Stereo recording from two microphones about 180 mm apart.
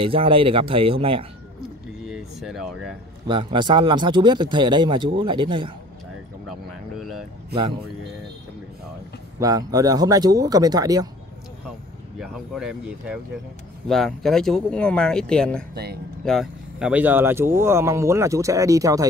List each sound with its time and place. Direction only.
0.0 s speech: 30° right (ahead or behind)
2.0 s a sound: centre (ahead or behind)
3.3 s speech: 25° right (ahead or behind)
6.4 s vehicle: centre (ahead or behind)
9.4 s speech: 20° right (ahead or behind)
12.2 s speech: 5° right (ahead or behind)
15.7 s speech: 65° right (ahead or behind)
16.3 s speech: centre (ahead or behind); by 19.0 s 20° right (ahead or behind)